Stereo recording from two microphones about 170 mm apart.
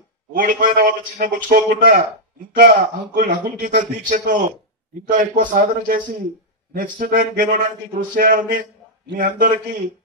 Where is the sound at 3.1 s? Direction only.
50° right (ahead or behind).